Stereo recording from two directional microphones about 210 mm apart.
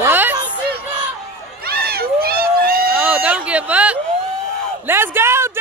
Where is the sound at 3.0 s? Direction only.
5° right (ahead or behind).